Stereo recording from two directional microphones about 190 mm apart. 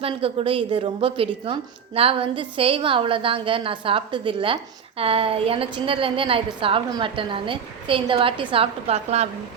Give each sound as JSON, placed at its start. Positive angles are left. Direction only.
{"t": 0.0, "sound": "a woman's voice", "side_deg": -30}